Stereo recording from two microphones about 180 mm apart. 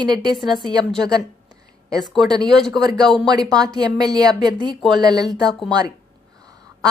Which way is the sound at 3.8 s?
20° right (ahead or behind).